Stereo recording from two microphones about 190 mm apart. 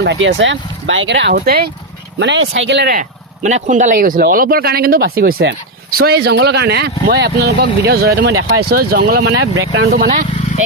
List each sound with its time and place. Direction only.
0.0 s speech: 75° right (ahead or behind); by 1.7 s 50° right (ahead or behind)
2.1 s speech: 70° right (ahead or behind); by 5.3 s 50° right (ahead or behind)
5.3 s speech: 70° right (ahead or behind)
6.0 s speech: 55° right (ahead or behind); by 8.6 s 80° right
8.7 s speech: 55° right (ahead or behind)